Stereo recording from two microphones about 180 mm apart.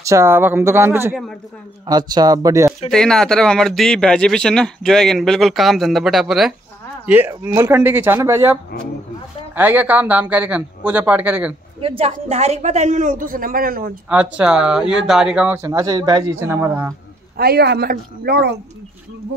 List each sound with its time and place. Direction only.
0.0 s speech: 15° right (ahead or behind)
2.9 s speech: 5° left (ahead or behind); by 8.5 s 15° right (ahead or behind)
9.6 s speech: 10° right (ahead or behind)
11.8 s a man's voice: 30° right (ahead or behind); by 13.9 s 55° right (ahead or behind)
14.0 s speech: 5° right (ahead or behind)
17.4 s speech: 60° right (ahead or behind)